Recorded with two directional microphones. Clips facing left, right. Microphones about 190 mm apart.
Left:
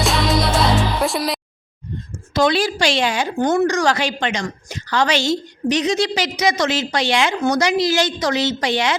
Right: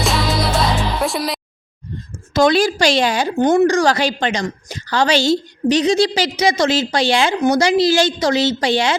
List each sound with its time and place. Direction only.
0.0 s music: centre (ahead or behind)
2.3 s a woman's voice: 45° right (ahead or behind)
3.3 s a woman's voice: 20° right (ahead or behind)
7.3 s speech: 15° right (ahead or behind)
7.6 s a woman's voice: 30° right (ahead or behind)